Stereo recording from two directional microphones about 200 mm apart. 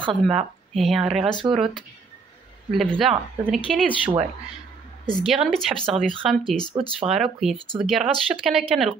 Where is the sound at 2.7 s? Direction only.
Centre (ahead or behind).